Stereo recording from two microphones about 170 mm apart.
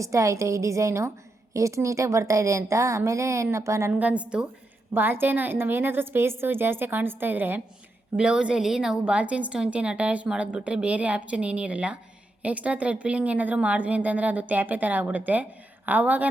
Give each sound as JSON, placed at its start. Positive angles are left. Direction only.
{"t": 0.0, "sound": "a woman's voice", "side_deg": -20}